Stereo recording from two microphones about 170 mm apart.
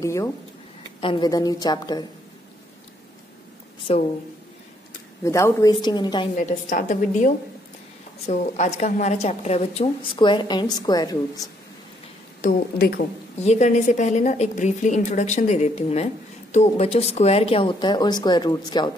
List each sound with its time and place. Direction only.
0.0 s a woman's voice: 15° left (ahead or behind)
3.9 s a woman's voice: 35° left (ahead or behind)
5.2 s a woman's voice: 15° left (ahead or behind)
6.3 s a woman's voice: 50° left (ahead or behind); by 11.4 s 20° left (ahead or behind)
12.4 s a woman's voice: 60° left (ahead or behind)
13.4 s a woman's voice: 40° left (ahead or behind); by 18.9 s 25° left (ahead or behind)